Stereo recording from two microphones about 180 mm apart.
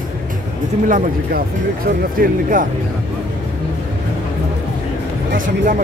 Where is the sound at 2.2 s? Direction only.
50° right (ahead or behind).